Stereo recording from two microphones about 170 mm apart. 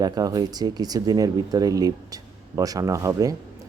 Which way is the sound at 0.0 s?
20° right (ahead or behind).